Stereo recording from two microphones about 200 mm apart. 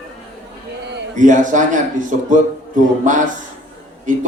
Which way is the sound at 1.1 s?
40° right (ahead or behind).